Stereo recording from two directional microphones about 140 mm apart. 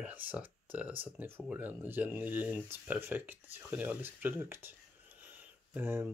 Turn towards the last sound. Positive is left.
turn(degrees=-15)  # may be behind; listen again after turning